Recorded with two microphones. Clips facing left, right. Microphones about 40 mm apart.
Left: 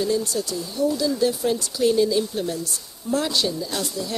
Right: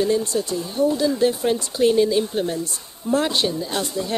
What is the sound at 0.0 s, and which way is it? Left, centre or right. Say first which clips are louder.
Speech: right 3 dB; right.